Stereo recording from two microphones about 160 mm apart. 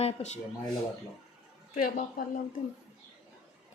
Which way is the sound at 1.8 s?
60° left (ahead or behind).